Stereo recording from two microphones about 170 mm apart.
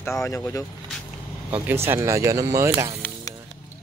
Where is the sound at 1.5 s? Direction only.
10° right (ahead or behind).